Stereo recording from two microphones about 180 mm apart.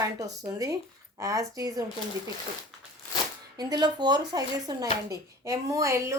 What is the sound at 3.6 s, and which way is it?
A woman's voice, 20° right (ahead or behind).